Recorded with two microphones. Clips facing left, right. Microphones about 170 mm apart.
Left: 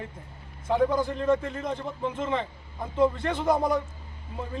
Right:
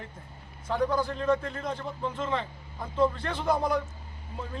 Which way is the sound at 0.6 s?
20° left (ahead or behind).